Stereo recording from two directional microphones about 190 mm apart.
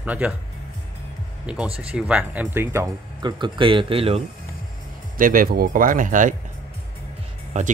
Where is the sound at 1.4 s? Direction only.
5° right (ahead or behind); by 4.2 s 30° right (ahead or behind).